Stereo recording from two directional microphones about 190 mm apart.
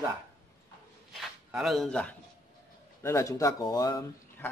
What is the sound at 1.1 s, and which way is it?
Speech, centre (ahead or behind).